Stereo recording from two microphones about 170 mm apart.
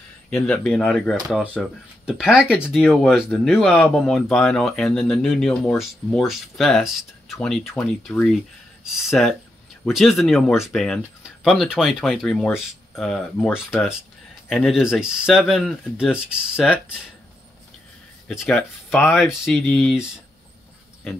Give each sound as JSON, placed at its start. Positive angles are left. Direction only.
{"t": 0.3, "sound": "speech", "side_deg": 5}
{"t": 18.3, "sound": "speech", "side_deg": 0}